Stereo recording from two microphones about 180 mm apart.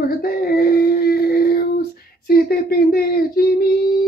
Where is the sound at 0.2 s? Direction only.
55° left (ahead or behind).